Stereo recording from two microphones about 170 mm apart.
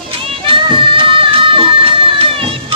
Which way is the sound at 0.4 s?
30° right (ahead or behind).